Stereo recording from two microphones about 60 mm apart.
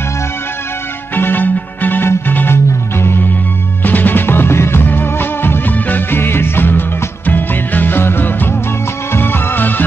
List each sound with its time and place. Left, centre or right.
1.1 s music: left
3.8 s music: left